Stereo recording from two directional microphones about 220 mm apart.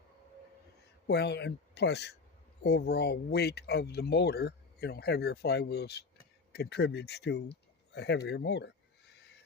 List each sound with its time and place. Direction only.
1.0 s speech: 50° left (ahead or behind)